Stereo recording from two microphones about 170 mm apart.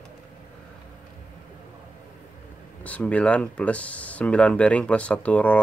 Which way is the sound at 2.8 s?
10° left (ahead or behind).